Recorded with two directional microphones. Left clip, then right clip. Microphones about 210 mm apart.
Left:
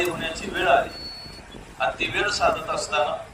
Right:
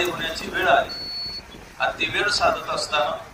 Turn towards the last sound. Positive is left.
turn(degrees=-5)  # may be behind; listen again after turning